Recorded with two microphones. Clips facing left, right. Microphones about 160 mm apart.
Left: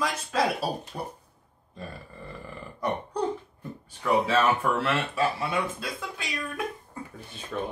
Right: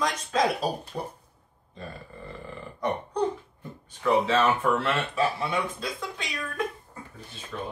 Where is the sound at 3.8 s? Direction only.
10° left (ahead or behind).